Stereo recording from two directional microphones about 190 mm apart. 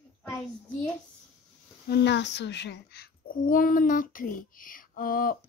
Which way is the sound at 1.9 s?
65° left (ahead or behind).